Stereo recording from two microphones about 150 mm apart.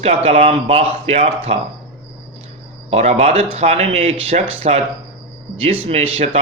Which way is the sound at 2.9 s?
45° right (ahead or behind).